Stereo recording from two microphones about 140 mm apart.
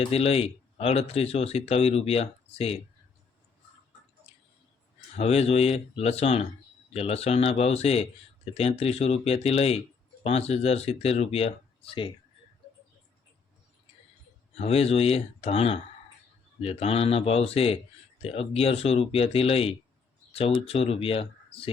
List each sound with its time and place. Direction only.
0.0 s speech: 45° left (ahead or behind)
5.1 s speech: 50° left (ahead or behind)
14.5 s speech: 45° left (ahead or behind)